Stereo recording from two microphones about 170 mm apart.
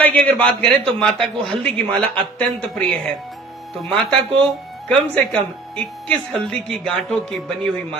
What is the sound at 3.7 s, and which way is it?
Speech, centre (ahead or behind).